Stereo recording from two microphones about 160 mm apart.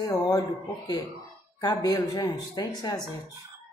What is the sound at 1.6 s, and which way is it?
Speech, 25° left (ahead or behind).